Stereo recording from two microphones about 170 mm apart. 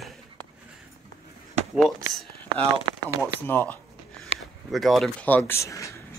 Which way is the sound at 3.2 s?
10° left (ahead or behind).